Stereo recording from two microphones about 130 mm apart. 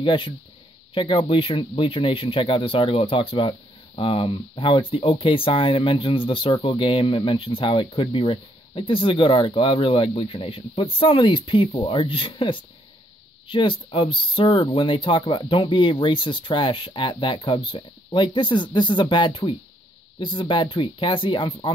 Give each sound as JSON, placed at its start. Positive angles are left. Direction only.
{"t": 0.0, "sound": "speech", "side_deg": 40}